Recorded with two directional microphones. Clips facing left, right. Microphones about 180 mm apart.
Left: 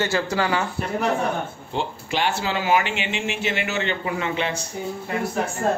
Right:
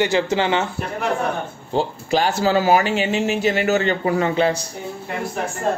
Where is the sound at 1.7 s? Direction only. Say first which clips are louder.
Right 8 dB; 40° right (ahead or behind).